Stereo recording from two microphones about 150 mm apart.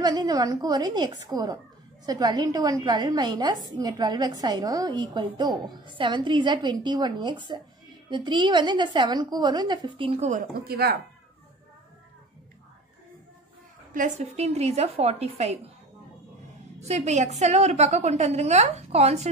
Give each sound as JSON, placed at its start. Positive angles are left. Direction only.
{"t": 0.0, "sound": "a woman's voice", "side_deg": -30}
{"t": 10.5, "sound": "speech", "side_deg": -90}
{"t": 13.9, "sound": "a woman's voice", "side_deg": -50}
{"t": 16.8, "sound": "a woman's voice", "side_deg": -45}